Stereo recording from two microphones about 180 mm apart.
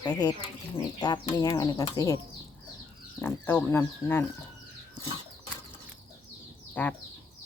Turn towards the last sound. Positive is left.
turn(degrees=10)  # may be behind; listen again after turning